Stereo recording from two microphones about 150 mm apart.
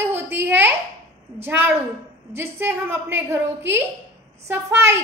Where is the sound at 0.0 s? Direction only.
15° right (ahead or behind).